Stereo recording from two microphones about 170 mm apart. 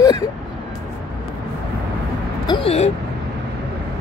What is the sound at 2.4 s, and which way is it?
Speech, 30° left (ahead or behind).